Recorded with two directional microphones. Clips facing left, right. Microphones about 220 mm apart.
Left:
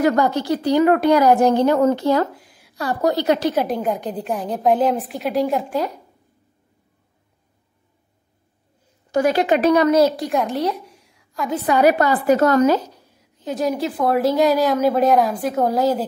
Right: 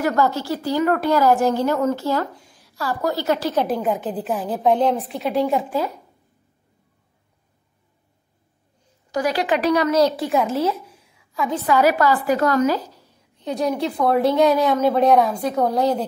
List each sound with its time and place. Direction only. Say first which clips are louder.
0.0 s speech: left 3 dB; 20° left (ahead or behind)
3.6 s a woman's voice: even; centre (ahead or behind)
9.1 s speech: left 4 dB; 25° left (ahead or behind)
10.1 s a woman's voice: right 1 dB; centre (ahead or behind)
11.5 s speech: left 2 dB; 20° left (ahead or behind)
13.4 s a woman's voice: even; centre (ahead or behind)